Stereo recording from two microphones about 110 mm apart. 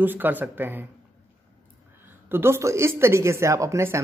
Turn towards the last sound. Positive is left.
turn(degrees=-25)  # may be behind; listen again after turning